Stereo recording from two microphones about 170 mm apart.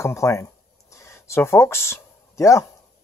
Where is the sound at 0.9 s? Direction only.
15° left (ahead or behind).